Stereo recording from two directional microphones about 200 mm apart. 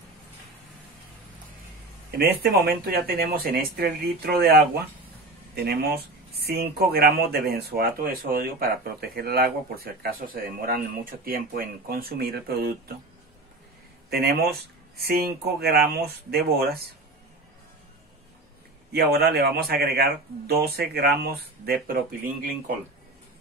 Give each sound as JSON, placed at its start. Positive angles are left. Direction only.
{"t": 2.0, "sound": "speech", "side_deg": -50}
{"t": 15.0, "sound": "speech", "side_deg": -50}
{"t": 18.9, "sound": "speech", "side_deg": -50}